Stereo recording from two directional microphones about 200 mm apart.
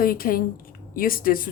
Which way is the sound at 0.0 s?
45° left (ahead or behind).